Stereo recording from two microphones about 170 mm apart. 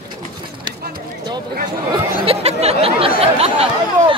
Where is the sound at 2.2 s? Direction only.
35° right (ahead or behind).